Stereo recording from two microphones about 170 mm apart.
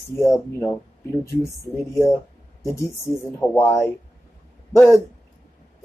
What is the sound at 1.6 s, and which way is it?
Speech, 20° left (ahead or behind).